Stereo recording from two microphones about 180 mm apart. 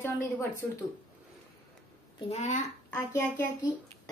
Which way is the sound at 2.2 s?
40° left (ahead or behind).